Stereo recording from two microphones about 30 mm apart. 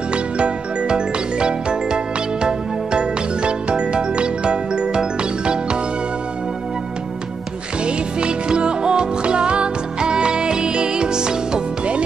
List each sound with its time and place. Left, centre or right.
0.1 s music: right
7.8 s music: right